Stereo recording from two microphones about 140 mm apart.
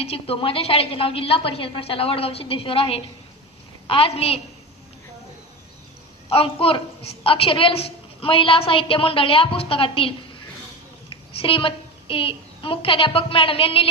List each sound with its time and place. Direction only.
0.0 s a woman's voice: 45° left (ahead or behind)
6.2 s a woman's voice: 40° left (ahead or behind)
11.3 s a woman's voice: 40° left (ahead or behind)